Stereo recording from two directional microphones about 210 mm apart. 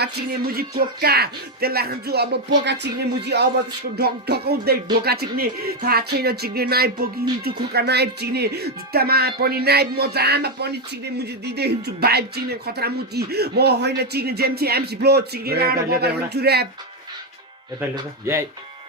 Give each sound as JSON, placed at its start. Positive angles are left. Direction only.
{"t": 0.0, "sound": "speech", "side_deg": -50}
{"t": 17.9, "sound": "speech", "side_deg": -10}